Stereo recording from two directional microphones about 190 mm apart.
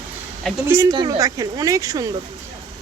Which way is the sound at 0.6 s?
15° right (ahead or behind).